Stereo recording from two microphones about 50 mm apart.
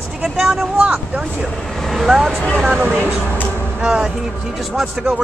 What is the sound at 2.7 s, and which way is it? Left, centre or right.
Speech, right.